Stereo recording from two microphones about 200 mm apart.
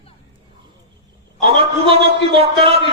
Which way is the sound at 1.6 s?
30° right (ahead or behind).